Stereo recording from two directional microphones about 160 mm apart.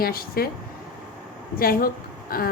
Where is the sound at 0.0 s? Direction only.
70° left (ahead or behind).